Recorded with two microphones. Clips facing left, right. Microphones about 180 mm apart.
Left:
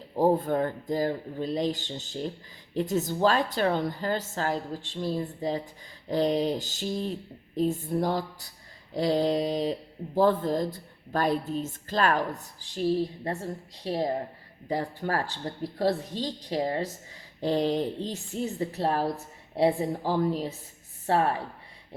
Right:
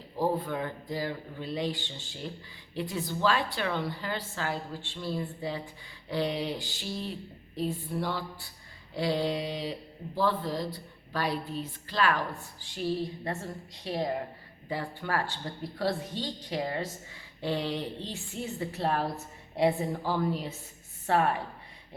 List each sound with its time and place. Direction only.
0.2 s a woman's voice: 45° left (ahead or behind)